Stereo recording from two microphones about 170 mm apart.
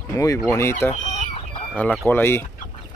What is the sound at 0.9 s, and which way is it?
Fowl, 40° left (ahead or behind).